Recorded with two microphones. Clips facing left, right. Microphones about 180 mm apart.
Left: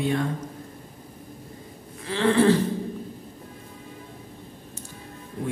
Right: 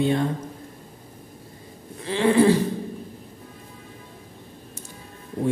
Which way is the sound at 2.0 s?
15° right (ahead or behind).